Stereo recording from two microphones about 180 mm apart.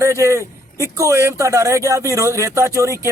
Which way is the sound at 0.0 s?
15° right (ahead or behind).